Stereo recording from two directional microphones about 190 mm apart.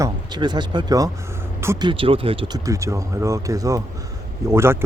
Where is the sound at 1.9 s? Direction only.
30° right (ahead or behind); by 4.8 s 15° right (ahead or behind).